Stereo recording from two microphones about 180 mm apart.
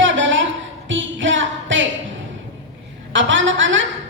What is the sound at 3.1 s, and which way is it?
Speech, 90° right.